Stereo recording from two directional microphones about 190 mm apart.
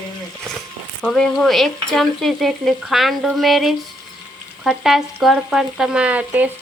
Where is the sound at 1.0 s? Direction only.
Centre (ahead or behind).